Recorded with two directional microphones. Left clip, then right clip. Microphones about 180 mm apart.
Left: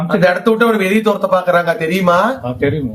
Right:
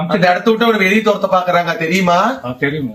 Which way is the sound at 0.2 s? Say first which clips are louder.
Left 1 dB; 30° left (ahead or behind).